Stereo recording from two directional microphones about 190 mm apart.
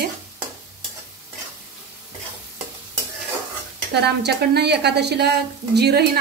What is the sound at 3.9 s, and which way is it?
A woman's voice, 60° right (ahead or behind).